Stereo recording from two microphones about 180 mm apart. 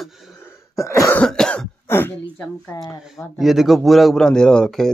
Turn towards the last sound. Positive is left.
turn(degrees=5)  # may be behind; listen again after turning